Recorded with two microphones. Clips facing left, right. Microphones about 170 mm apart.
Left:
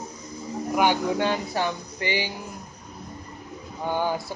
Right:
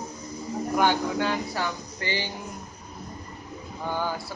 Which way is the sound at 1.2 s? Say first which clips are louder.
Left 2 dB; 25° left (ahead or behind).